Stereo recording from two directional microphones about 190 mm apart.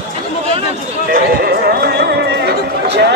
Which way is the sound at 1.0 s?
55° right (ahead or behind).